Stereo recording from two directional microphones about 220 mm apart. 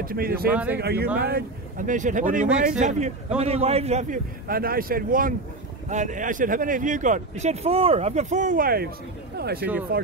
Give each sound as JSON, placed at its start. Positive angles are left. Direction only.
{"t": 0.0, "sound": "speech", "side_deg": -40}
{"t": 0.5, "sound": "speech", "side_deg": -5}
{"t": 0.7, "sound": "speech", "side_deg": -45}